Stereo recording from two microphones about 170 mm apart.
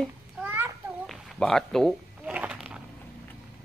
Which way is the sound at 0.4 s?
10° right (ahead or behind).